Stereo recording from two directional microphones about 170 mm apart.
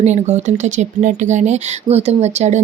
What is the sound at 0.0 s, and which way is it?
A woman's voice, 40° right (ahead or behind).